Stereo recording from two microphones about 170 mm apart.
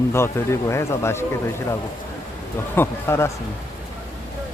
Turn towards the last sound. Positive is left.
turn(degrees=15)  # may be behind; listen again after turning